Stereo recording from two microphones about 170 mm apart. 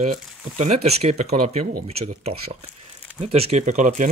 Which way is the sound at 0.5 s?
40° right (ahead or behind).